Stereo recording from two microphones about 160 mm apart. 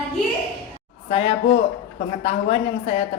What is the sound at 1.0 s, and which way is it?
A woman's voice, 35° left (ahead or behind).